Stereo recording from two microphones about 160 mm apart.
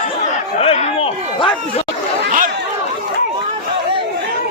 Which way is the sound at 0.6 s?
35° left (ahead or behind).